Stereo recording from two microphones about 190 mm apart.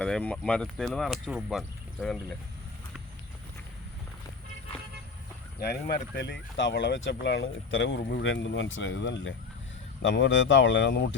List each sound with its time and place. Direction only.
0.0 s speech: 5° left (ahead or behind)
5.6 s speech: 60° left (ahead or behind)